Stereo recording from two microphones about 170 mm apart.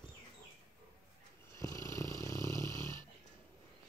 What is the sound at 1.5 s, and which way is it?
Snoring, 20° left (ahead or behind).